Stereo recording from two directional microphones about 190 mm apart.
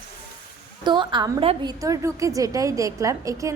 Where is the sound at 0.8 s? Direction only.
25° right (ahead or behind).